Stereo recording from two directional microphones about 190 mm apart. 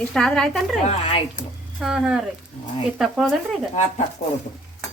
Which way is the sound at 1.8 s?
5° right (ahead or behind).